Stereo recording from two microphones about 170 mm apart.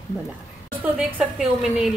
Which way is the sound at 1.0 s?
5° right (ahead or behind).